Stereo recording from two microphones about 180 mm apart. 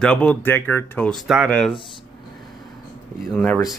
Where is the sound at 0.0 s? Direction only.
5° left (ahead or behind).